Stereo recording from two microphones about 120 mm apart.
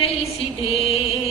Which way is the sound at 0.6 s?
55° left (ahead or behind).